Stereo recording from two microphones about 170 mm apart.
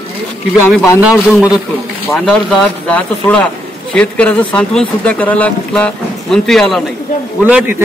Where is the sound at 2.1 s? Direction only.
5° left (ahead or behind).